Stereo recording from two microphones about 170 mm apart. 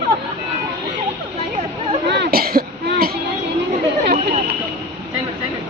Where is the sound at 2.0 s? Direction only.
85° right; by 3.1 s 60° right (ahead or behind).